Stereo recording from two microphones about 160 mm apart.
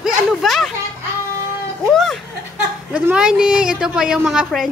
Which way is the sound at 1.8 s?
Centre (ahead or behind).